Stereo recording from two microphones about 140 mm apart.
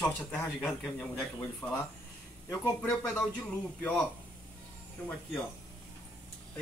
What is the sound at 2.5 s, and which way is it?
Speech, 20° left (ahead or behind).